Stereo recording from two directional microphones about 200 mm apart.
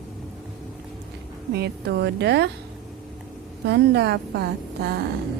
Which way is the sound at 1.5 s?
55° right (ahead or behind).